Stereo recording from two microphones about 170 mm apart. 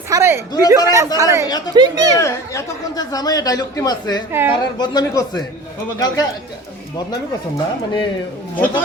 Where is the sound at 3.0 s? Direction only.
20° left (ahead or behind).